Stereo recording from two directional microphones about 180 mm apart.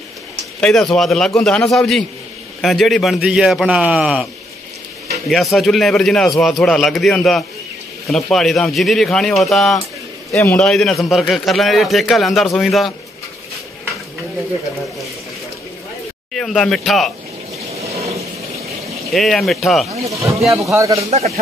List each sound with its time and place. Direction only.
0.6 s a man's voice: 5° left (ahead or behind)
16.3 s a man's voice: 5° left (ahead or behind)
17.6 s a sound: 35° right (ahead or behind)
19.1 s a man's voice: centre (ahead or behind)
20.1 s speech: 15° right (ahead or behind)
21.1 s a man's voice: 35° right (ahead or behind)